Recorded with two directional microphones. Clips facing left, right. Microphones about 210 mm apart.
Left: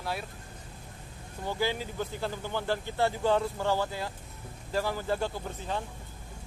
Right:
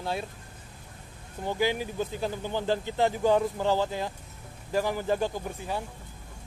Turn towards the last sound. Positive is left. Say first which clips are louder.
# right 2 dB
turn(degrees=-15)  # may be behind; listen again after turning